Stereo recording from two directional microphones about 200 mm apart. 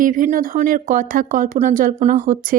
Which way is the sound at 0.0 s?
40° right (ahead or behind).